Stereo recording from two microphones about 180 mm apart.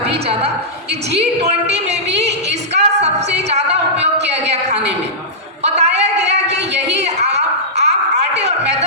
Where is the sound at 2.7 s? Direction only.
40° right (ahead or behind).